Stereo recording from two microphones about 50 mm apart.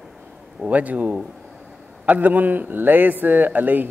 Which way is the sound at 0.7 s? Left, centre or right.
Right.